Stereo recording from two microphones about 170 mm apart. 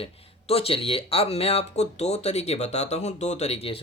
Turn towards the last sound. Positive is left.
turn(degrees=35)  # may be behind; listen again after turning